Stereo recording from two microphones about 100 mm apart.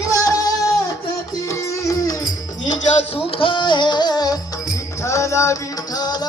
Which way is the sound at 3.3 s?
55° left (ahead or behind).